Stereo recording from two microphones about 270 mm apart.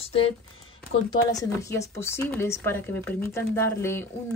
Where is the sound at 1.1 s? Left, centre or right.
Centre.